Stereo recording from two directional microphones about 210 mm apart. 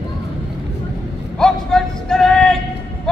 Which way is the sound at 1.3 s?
Centre (ahead or behind).